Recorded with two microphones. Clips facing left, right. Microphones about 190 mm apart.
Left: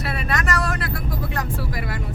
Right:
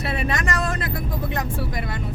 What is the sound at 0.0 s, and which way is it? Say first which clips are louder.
Vehicle: right 1 dB; 25° right (ahead or behind).